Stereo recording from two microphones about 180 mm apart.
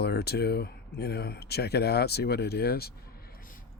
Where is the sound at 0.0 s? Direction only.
65° left (ahead or behind).